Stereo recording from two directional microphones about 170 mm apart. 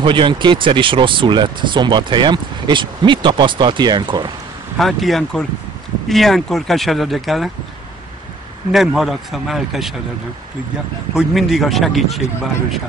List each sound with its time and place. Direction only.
0.0 s speech: 30° right (ahead or behind)
4.7 s speech: centre (ahead or behind)
8.7 s speech: centre (ahead or behind)
11.1 s speech: centre (ahead or behind)